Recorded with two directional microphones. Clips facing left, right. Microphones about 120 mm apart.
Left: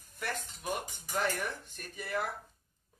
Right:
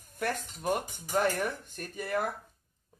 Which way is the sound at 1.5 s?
50° right (ahead or behind).